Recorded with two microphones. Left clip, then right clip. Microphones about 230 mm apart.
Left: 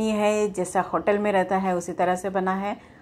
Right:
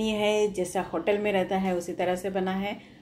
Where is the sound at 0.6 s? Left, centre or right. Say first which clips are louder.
Left 5 dB; centre.